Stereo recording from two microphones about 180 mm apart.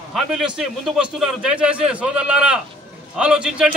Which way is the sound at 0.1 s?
Centre (ahead or behind).